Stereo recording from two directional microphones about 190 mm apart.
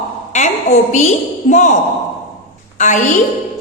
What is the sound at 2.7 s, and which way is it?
Speech, 40° left (ahead or behind).